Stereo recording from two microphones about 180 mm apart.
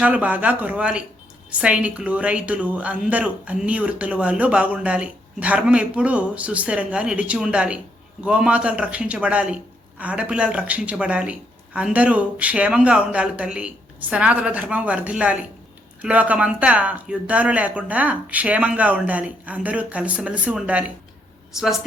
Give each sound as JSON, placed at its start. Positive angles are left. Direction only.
{"t": 0.0, "sound": "a woman's voice", "side_deg": -10}